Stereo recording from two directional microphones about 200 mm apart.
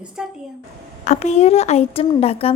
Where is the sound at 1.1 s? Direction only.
35° left (ahead or behind).